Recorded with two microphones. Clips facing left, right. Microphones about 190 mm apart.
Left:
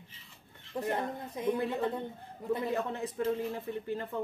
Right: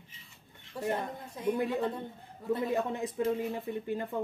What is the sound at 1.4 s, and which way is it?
Speech, 20° left (ahead or behind).